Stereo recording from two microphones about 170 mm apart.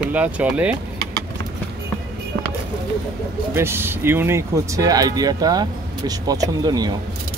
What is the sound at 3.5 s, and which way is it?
Speech, 15° right (ahead or behind).